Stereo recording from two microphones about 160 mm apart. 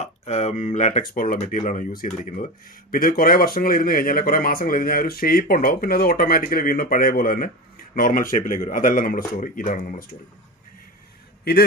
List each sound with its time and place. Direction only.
0.0 s speech: 45° left (ahead or behind)
2.9 s speech: 65° left (ahead or behind)